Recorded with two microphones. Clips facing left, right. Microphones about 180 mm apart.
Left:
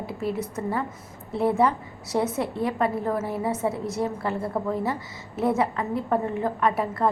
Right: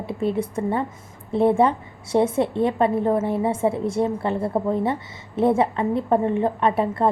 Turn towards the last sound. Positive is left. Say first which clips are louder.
# right 3 dB
turn(degrees=-25)  # may be behind; listen again after turning